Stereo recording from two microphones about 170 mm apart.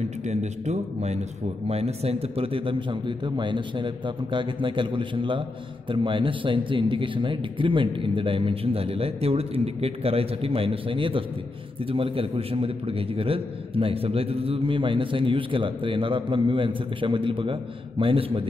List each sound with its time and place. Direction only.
0.2 s a man's voice: 40° right (ahead or behind)